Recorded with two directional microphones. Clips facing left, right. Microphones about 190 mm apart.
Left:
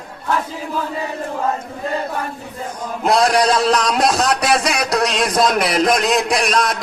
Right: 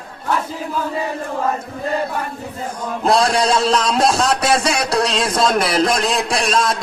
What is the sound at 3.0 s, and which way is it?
A man's voice, 30° right (ahead or behind).